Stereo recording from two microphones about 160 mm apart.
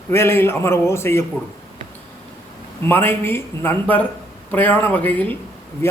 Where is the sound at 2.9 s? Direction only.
15° left (ahead or behind).